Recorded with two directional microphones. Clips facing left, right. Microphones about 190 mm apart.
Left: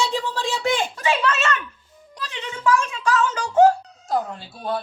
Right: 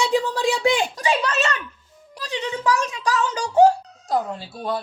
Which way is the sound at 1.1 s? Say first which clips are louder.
Left 1 dB; 35° right (ahead or behind).